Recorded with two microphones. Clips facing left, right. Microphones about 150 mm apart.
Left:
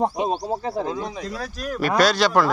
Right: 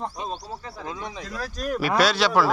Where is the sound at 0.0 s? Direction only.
70° left (ahead or behind).